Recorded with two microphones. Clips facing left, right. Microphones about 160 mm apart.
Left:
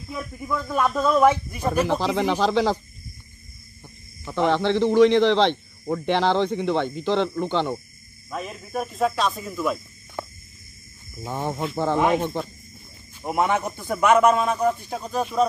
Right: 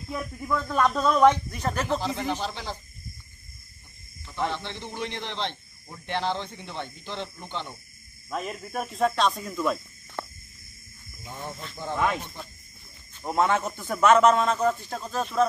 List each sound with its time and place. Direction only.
0.1 s speech: centre (ahead or behind)
1.9 s a man's voice: 90° left
4.2 s a man's voice: 85° left
8.3 s speech: centre (ahead or behind)
11.2 s a man's voice: 90° left
13.2 s speech: 15° left (ahead or behind)